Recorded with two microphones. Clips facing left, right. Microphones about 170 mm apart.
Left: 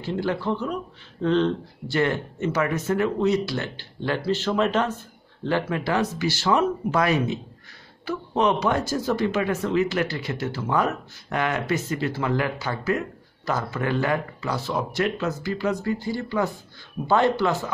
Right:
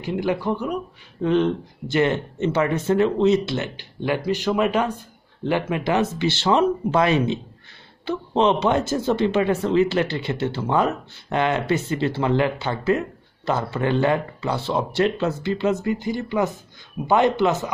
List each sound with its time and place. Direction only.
0.0 s speech: 15° right (ahead or behind)